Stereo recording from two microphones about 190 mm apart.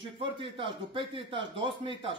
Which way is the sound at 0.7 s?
25° right (ahead or behind).